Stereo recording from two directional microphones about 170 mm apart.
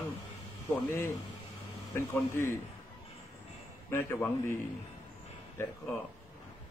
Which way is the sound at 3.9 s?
15° left (ahead or behind).